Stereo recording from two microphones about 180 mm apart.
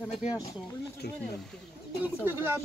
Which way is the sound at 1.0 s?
65° left (ahead or behind).